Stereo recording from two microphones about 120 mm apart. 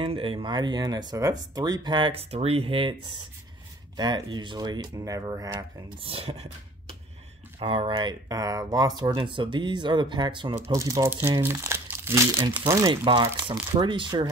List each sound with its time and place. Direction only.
0.0 s speech: 45° right (ahead or behind)
2.3 s speech: 55° right (ahead or behind); by 5.9 s 35° right (ahead or behind)
6.0 s speech: 55° right (ahead or behind)
7.5 s speech: 55° right (ahead or behind)
7.9 s speech: 35° right (ahead or behind)
10.5 s speech: 25° right (ahead or behind)
12.9 s speech: 40° right (ahead or behind)